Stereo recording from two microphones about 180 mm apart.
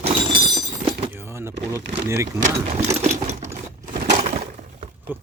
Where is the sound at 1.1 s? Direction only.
15° right (ahead or behind).